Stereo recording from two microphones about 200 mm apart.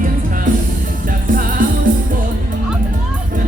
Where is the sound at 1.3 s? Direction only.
45° right (ahead or behind).